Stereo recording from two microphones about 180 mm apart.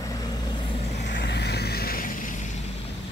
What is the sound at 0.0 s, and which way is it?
Vehicle, 20° left (ahead or behind).